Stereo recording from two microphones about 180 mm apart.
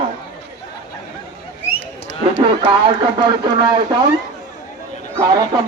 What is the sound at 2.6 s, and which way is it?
Speech, 25° right (ahead or behind).